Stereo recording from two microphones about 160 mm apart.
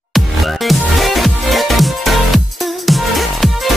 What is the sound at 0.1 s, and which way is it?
Music, centre (ahead or behind).